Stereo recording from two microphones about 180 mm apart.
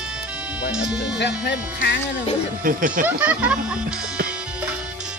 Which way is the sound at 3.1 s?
10° right (ahead or behind).